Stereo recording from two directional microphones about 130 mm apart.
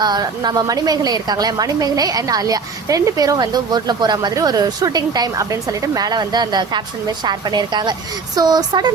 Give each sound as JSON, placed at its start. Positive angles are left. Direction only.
{"t": 0.0, "sound": "a woman's voice", "side_deg": -30}